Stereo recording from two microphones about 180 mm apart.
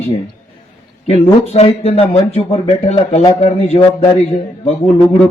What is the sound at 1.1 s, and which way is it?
A man's voice, 35° left (ahead or behind).